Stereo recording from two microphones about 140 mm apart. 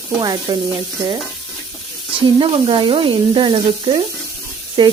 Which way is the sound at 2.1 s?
40° right (ahead or behind).